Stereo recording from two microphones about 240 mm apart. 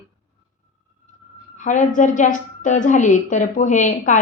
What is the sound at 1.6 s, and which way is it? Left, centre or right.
A woman's voice, left.